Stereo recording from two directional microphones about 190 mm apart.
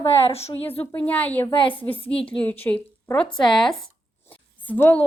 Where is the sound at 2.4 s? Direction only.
10° left (ahead or behind).